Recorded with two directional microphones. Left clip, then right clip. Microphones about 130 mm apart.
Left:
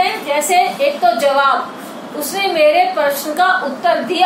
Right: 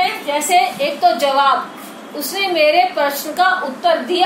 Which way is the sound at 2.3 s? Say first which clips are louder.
Left 1 dB; 25° right (ahead or behind).